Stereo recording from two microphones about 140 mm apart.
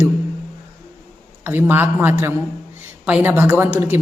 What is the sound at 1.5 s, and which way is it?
A woman's voice, 15° right (ahead or behind).